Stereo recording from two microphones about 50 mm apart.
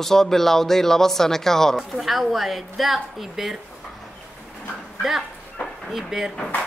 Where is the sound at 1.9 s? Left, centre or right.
Centre.